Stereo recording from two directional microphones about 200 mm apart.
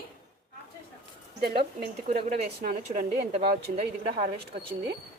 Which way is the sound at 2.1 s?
35° right (ahead or behind).